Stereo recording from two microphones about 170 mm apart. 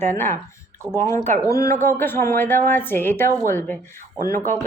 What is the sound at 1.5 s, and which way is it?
A woman's voice, 20° left (ahead or behind).